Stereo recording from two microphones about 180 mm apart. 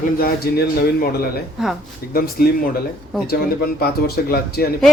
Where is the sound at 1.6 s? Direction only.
Centre (ahead or behind).